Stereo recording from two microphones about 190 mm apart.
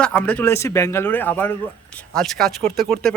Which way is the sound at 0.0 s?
5° left (ahead or behind).